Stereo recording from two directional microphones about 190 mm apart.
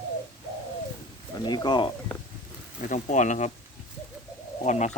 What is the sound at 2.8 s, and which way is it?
Speech, 40° left (ahead or behind).